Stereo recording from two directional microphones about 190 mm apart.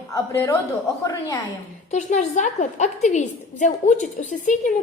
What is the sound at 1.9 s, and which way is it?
A woman's voice, 40° left (ahead or behind).